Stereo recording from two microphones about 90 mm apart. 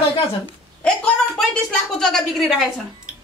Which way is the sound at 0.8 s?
15° left (ahead or behind).